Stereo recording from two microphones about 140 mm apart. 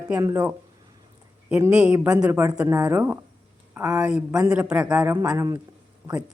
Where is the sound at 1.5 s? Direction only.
15° right (ahead or behind).